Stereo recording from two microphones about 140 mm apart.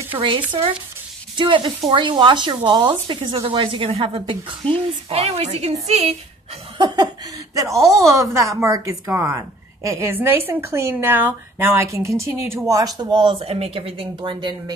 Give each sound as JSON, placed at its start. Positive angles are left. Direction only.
{"t": 0.1, "sound": "speech", "side_deg": -35}
{"t": 0.6, "sound": "a woman's voice", "side_deg": -25}
{"t": 1.3, "sound": "speech", "side_deg": -35}
{"t": 4.6, "sound": "a child's voice", "side_deg": 10}
{"t": 5.1, "sound": "a woman's voice", "side_deg": -50}
{"t": 7.5, "sound": "a woman's voice", "side_deg": -25}